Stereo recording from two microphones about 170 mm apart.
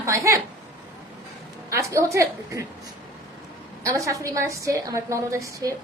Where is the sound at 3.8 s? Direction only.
20° right (ahead or behind).